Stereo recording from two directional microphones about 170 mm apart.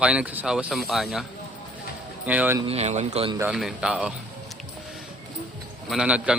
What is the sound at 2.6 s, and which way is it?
Speech, 35° right (ahead or behind).